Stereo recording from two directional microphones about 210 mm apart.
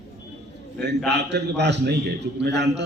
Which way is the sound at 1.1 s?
55° right (ahead or behind).